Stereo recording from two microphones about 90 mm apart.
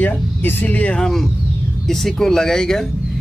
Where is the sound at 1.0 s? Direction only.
5° left (ahead or behind).